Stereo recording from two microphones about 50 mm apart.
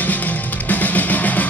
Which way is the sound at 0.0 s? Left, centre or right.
Left.